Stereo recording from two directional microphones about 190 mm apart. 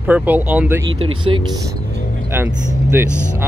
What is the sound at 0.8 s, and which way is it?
Speech, 90° right.